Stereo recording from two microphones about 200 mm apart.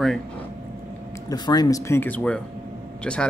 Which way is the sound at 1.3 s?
20° left (ahead or behind).